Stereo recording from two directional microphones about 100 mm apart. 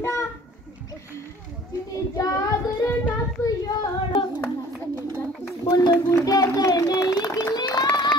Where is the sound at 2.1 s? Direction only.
30° left (ahead or behind).